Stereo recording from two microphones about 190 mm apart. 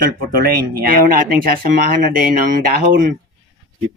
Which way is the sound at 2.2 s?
50° right (ahead or behind).